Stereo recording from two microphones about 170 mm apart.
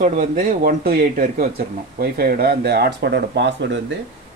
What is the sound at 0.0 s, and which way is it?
A man's voice, 45° right (ahead or behind).